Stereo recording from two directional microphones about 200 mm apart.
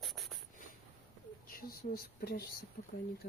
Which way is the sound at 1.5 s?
45° left (ahead or behind).